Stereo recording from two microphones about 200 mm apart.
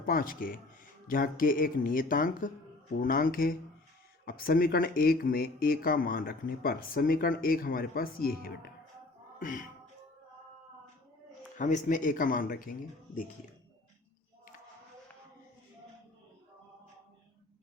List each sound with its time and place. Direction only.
0.0 s speech: 45° left (ahead or behind)
11.5 s speech: 40° left (ahead or behind)